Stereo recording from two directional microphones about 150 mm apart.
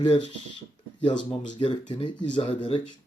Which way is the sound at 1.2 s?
35° left (ahead or behind).